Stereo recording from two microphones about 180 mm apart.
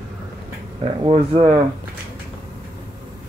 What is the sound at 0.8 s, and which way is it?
Speech, 35° right (ahead or behind).